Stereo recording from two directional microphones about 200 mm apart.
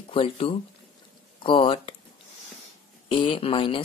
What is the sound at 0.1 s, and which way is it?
Speech, 25° left (ahead or behind).